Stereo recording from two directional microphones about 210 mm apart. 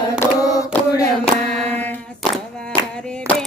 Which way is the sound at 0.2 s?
15° left (ahead or behind).